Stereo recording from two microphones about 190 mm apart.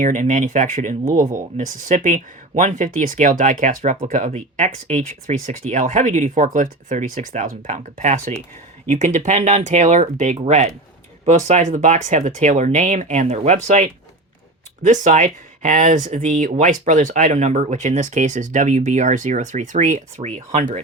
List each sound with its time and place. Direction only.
0.0 s speech: 40° right (ahead or behind)